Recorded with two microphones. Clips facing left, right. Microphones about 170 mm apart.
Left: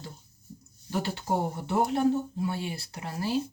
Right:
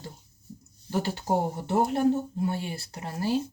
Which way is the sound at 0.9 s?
45° right (ahead or behind).